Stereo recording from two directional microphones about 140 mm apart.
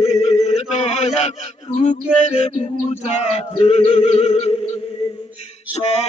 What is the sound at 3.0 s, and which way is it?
Chant, 55° left (ahead or behind).